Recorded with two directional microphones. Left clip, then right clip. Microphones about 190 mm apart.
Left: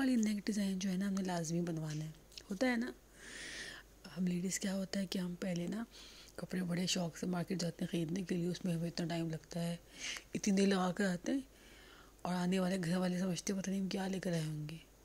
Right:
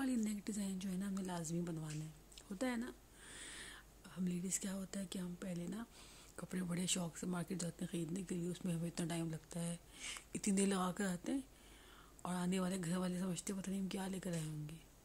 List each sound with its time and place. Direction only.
0.0 s a woman's voice: 20° left (ahead or behind)
6.3 s speech: 10° left (ahead or behind)